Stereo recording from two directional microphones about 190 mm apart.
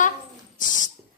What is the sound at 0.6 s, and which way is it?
Dog, 40° left (ahead or behind).